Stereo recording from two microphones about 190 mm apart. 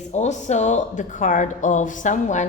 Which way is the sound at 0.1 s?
35° left (ahead or behind).